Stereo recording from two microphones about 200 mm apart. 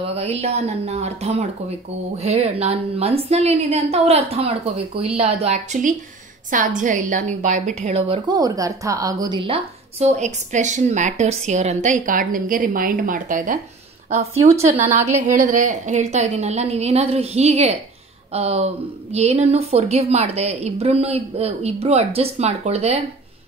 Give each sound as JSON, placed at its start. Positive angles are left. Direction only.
{"t": 0.1, "sound": "a woman's voice", "side_deg": -30}